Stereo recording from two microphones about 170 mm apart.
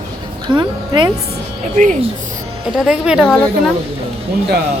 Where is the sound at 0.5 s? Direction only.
25° right (ahead or behind).